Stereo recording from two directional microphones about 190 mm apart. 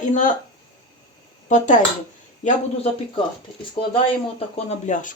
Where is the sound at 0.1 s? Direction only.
40° left (ahead or behind).